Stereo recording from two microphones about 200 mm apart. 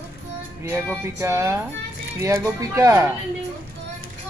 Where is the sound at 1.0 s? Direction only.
15° right (ahead or behind).